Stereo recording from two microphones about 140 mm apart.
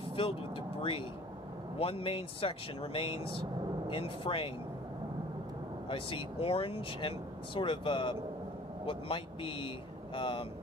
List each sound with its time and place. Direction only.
0.0 s vehicle: 40° left (ahead or behind)
1.8 s speech: 40° left (ahead or behind)
5.9 s speech: 40° left (ahead or behind)